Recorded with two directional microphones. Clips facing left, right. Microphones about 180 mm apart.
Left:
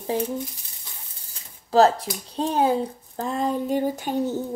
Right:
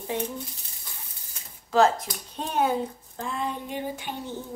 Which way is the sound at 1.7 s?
35° left (ahead or behind).